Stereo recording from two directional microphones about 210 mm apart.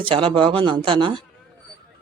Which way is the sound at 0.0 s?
25° right (ahead or behind).